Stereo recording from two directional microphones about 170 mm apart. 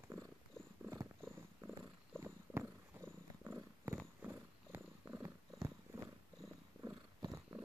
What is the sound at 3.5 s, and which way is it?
Purr, 10° right (ahead or behind).